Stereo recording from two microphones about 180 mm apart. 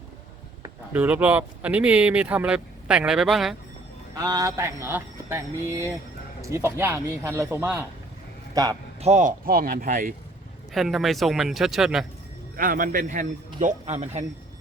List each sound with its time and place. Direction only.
0.9 s speech: 10° right (ahead or behind)
4.1 s speech: 20° right (ahead or behind)
9.0 s speech: 40° right (ahead or behind)
10.7 s speech: centre (ahead or behind)
12.5 s speech: 50° right (ahead or behind)